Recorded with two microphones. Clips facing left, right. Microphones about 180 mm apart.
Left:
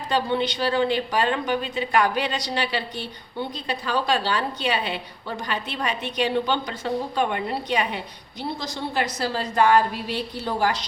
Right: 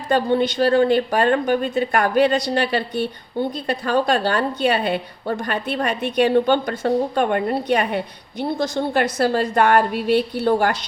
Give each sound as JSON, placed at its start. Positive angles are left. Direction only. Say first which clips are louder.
{"t": 0.1, "sound": "a woman's voice", "louder": "right 6 dB", "side_deg": -50}